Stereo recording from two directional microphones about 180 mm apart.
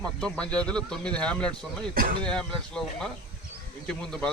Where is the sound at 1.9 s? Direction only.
50° right (ahead or behind).